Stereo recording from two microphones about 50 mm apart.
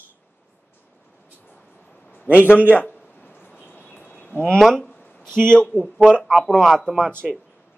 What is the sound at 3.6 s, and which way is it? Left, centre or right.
Bird, left.